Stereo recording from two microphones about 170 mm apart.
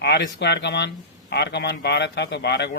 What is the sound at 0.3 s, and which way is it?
Speech, 85° left.